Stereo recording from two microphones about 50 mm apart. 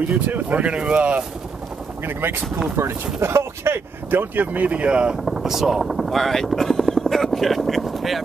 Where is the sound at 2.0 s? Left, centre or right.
Right.